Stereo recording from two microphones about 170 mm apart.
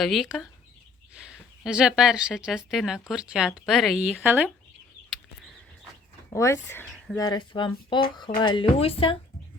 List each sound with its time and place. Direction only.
0.0 s speech: centre (ahead or behind)
6.3 s speech: 15° left (ahead or behind)
6.8 s speech: 5° left (ahead or behind)
7.2 s speech: 25° left (ahead or behind)